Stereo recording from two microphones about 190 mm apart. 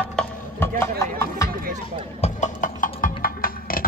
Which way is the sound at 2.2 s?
40° left (ahead or behind).